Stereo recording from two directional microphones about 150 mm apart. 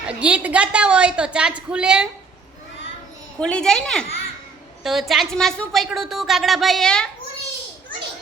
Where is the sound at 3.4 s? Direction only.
5° left (ahead or behind).